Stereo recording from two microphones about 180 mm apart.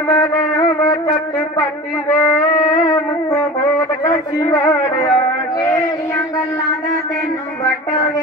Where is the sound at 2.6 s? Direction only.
20° left (ahead or behind).